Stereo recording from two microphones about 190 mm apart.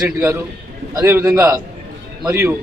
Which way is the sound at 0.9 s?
15° right (ahead or behind).